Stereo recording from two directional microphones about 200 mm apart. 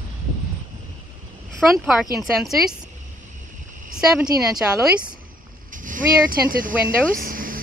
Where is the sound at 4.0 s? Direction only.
5° right (ahead or behind).